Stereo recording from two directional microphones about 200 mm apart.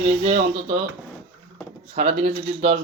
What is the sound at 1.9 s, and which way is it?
Speech, 35° right (ahead or behind).